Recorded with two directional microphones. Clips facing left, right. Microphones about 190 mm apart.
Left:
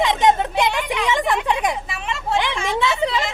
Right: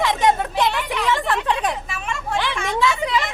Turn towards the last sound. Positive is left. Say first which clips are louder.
# even
turn(degrees=25)  # may be behind; listen again after turning